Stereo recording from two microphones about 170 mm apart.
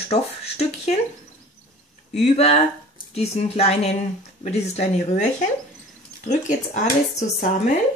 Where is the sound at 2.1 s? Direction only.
40° left (ahead or behind).